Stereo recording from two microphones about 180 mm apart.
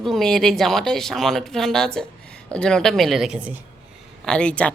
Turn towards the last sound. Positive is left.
turn(degrees=5)  # may be behind; listen again after turning